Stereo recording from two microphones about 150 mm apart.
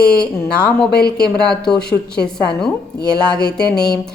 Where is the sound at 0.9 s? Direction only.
90° left.